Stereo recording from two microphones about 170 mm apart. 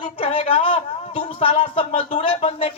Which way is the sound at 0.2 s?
30° left (ahead or behind).